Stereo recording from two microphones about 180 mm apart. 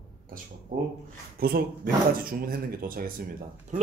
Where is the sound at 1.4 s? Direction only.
55° right (ahead or behind).